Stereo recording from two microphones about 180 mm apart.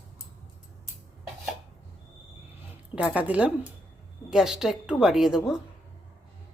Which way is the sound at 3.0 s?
10° right (ahead or behind).